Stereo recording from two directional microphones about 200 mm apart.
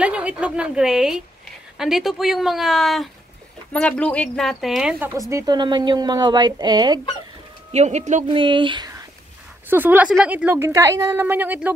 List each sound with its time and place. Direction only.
0.0 s a woman's voice: 5° right (ahead or behind)
5.3 s speech: 20° right (ahead or behind)
7.7 s speech: 35° right (ahead or behind)
8.3 s speech: 25° right (ahead or behind)
9.7 s a woman's voice: 10° right (ahead or behind)